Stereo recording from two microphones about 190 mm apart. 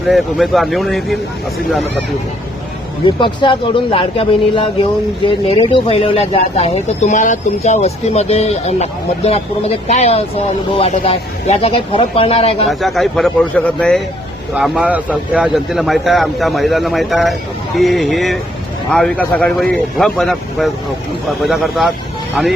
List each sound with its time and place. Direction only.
0.1 s a man's voice: centre (ahead or behind)
3.2 s speech: 25° left (ahead or behind)
12.6 s a man's voice: centre (ahead or behind)
14.5 s a man's voice: 5° right (ahead or behind)